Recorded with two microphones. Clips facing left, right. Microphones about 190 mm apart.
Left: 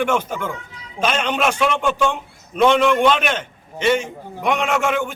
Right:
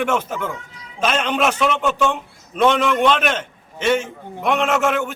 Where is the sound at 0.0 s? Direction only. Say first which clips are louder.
Left 1 dB; 5° right (ahead or behind).